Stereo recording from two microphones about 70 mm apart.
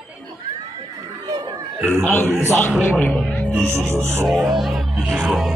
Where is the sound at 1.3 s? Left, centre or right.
Right.